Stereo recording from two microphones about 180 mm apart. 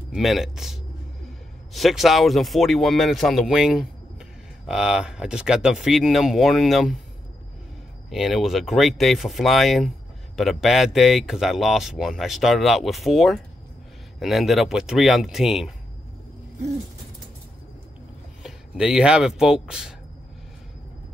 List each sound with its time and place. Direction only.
0.1 s speech: centre (ahead or behind)
8.1 s speech: centre (ahead or behind)
18.4 s speech: 5° right (ahead or behind)